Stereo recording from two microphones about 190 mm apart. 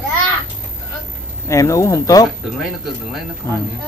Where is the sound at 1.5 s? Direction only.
15° left (ahead or behind).